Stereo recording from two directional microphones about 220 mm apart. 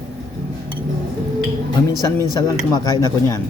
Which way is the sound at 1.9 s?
15° right (ahead or behind).